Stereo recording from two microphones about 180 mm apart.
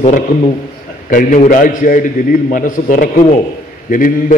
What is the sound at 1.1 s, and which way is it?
A man's voice, 45° left (ahead or behind).